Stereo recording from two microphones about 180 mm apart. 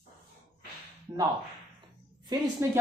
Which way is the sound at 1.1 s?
25° right (ahead or behind).